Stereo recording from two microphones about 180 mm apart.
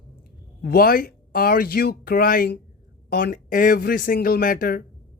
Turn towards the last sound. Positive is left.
turn(degrees=50)  # may be behind; listen again after turning